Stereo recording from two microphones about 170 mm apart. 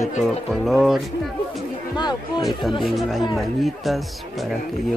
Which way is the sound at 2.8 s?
Centre (ahead or behind).